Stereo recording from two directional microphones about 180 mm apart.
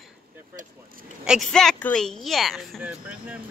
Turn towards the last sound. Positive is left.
turn(degrees=-5)  # may be behind; listen again after turning